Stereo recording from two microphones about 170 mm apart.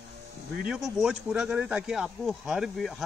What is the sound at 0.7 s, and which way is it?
Speech, 5° right (ahead or behind).